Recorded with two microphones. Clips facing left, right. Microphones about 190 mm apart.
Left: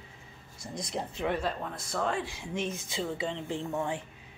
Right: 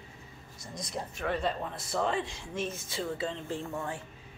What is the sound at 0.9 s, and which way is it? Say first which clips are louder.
Speech: left 2 dB; 15° left (ahead or behind).